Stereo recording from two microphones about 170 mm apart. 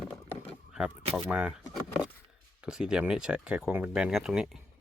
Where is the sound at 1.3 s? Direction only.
5° right (ahead or behind).